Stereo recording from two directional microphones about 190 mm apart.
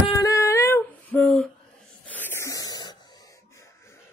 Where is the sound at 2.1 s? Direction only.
10° left (ahead or behind).